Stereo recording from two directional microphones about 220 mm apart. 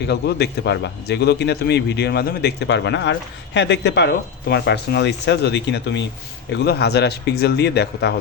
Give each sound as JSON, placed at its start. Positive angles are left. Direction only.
{"t": 0.1, "sound": "a man's voice", "side_deg": 50}